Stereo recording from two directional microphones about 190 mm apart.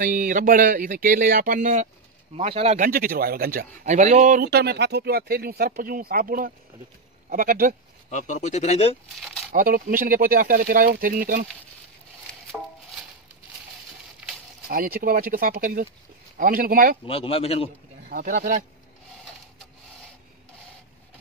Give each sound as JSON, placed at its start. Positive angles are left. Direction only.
{"t": 0.0, "sound": "speech", "side_deg": -45}
{"t": 2.9, "sound": "speech", "side_deg": -50}
{"t": 4.5, "sound": "speech", "side_deg": -60}
{"t": 8.1, "sound": "speech", "side_deg": 40}
{"t": 9.2, "sound": "a sound", "side_deg": 0}
{"t": 9.5, "sound": "speech", "side_deg": -50}
{"t": 14.7, "sound": "speech", "side_deg": -50}
{"t": 17.0, "sound": "speech", "side_deg": 30}
{"t": 18.1, "sound": "speech", "side_deg": -45}